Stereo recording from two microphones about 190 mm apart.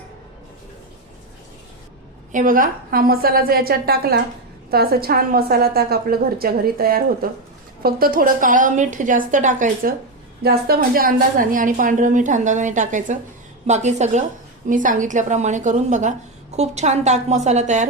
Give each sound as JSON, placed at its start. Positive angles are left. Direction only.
{"t": 2.3, "sound": "a woman's voice", "side_deg": -45}
{"t": 10.4, "sound": "a woman's voice", "side_deg": -55}